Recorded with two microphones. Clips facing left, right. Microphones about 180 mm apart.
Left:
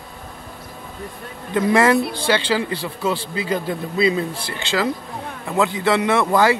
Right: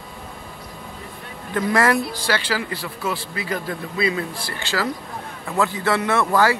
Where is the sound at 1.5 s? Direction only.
20° left (ahead or behind).